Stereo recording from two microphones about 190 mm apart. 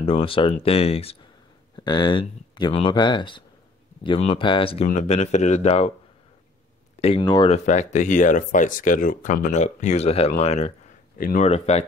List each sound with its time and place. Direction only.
0.0 s speech: 30° left (ahead or behind)
7.0 s speech: 30° left (ahead or behind)
11.4 s speech: 35° left (ahead or behind)